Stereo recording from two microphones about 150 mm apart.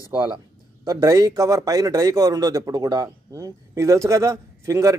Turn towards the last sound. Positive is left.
turn(degrees=-20)  # may be behind; listen again after turning